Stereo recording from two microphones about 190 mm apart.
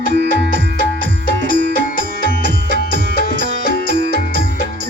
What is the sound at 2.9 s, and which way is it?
Music, 45° left (ahead or behind).